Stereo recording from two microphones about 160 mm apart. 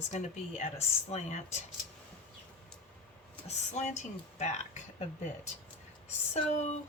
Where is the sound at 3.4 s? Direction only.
45° left (ahead or behind).